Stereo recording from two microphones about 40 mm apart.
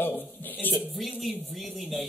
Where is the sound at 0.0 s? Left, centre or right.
Left.